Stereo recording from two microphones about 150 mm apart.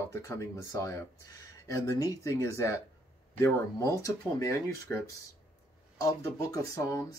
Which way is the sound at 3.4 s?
20° left (ahead or behind).